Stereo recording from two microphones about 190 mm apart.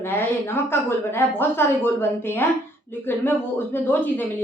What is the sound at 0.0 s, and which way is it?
A woman's voice, 10° left (ahead or behind).